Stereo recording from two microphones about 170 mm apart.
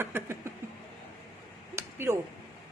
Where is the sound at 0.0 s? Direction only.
15° right (ahead or behind).